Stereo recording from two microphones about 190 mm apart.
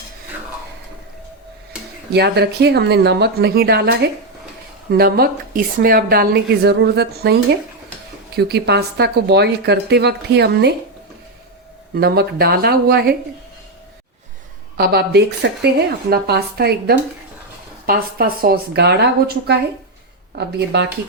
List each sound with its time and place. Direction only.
2.1 s a woman's voice: 60° right (ahead or behind)
8.4 s a woman's voice: 60° right (ahead or behind)
11.9 s a woman's voice: 55° right (ahead or behind)
14.8 s a woman's voice: 55° right (ahead or behind)
20.7 s a woman's voice: 60° right (ahead or behind)